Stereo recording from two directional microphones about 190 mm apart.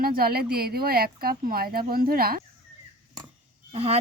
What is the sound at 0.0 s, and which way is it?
Speech, 50° right (ahead or behind).